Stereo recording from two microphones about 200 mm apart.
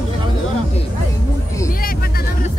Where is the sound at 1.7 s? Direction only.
45° left (ahead or behind).